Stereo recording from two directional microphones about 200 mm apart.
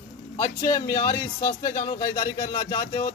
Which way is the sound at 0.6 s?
15° left (ahead or behind).